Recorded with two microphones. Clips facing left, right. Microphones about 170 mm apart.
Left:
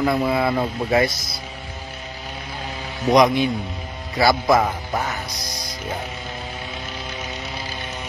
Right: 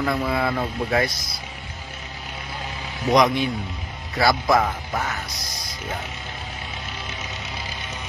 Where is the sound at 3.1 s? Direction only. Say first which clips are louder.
Left 3 dB; centre (ahead or behind).